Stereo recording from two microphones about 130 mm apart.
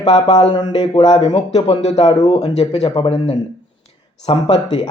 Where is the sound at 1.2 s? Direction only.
50° left (ahead or behind).